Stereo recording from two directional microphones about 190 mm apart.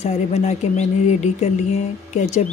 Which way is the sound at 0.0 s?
35° left (ahead or behind).